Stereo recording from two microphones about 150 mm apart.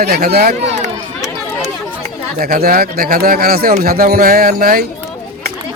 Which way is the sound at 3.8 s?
85° right.